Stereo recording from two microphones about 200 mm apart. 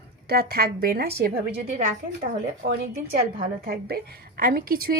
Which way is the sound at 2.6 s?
50° right (ahead or behind).